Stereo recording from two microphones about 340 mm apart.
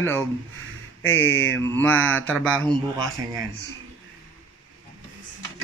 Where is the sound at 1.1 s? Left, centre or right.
Left.